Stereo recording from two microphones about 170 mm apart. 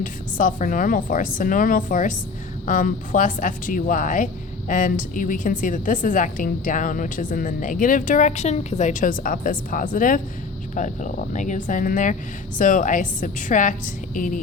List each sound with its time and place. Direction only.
0.0 s a woman's voice: 50° left (ahead or behind)